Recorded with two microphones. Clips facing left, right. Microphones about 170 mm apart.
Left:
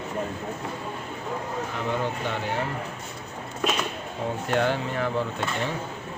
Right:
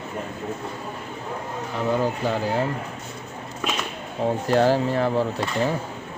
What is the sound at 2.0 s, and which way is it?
Speech, 35° right (ahead or behind).